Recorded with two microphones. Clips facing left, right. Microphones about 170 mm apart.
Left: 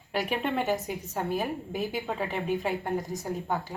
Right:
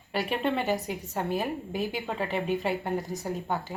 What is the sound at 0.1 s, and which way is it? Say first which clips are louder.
Speech: right 1 dB; centre (ahead or behind).